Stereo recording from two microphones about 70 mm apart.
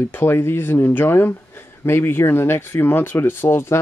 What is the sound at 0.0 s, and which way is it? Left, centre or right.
Speech, left.